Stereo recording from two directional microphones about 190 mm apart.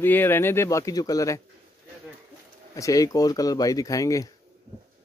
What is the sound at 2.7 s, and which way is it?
A man's voice, 15° left (ahead or behind).